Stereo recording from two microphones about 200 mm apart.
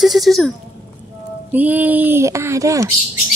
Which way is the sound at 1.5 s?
10° right (ahead or behind).